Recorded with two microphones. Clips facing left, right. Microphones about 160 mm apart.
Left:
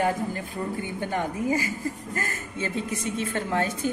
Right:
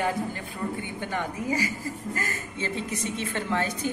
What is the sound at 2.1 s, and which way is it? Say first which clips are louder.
A woman's voice: left 1 dB; 50° left (ahead or behind).